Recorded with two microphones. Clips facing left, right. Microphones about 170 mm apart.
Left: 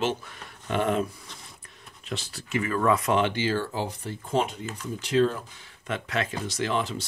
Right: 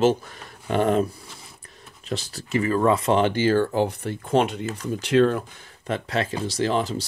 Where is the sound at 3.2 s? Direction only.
45° right (ahead or behind); by 5.4 s 65° right (ahead or behind).